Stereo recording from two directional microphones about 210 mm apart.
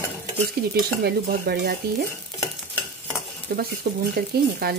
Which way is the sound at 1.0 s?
50° right (ahead or behind).